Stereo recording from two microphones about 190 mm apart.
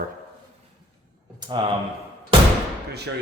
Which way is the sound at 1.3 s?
25° right (ahead or behind).